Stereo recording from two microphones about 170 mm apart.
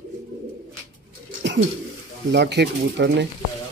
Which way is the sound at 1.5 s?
90° right.